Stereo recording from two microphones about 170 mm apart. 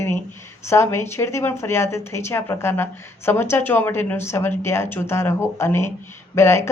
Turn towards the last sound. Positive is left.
turn(degrees=15)  # may be behind; listen again after turning